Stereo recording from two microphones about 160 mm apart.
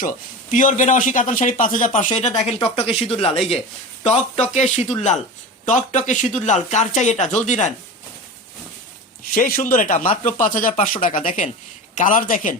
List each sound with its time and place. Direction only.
0.5 s speech: 55° left (ahead or behind)
9.3 s speech: 60° left (ahead or behind)